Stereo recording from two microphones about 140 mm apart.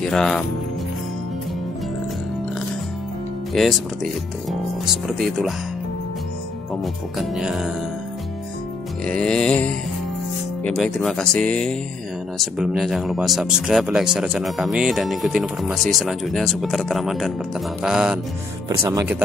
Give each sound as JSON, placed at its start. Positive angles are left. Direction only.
{"t": 0.0, "sound": "speech", "side_deg": 5}
{"t": 3.5, "sound": "speech", "side_deg": 0}
{"t": 6.7, "sound": "speech", "side_deg": 0}
{"t": 9.0, "sound": "music", "side_deg": 5}
{"t": 10.8, "sound": "speech", "side_deg": 0}
{"t": 17.8, "sound": "music", "side_deg": -5}
{"t": 18.7, "sound": "speech", "side_deg": -25}